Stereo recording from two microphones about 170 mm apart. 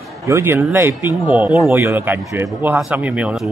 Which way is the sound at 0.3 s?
15° right (ahead or behind).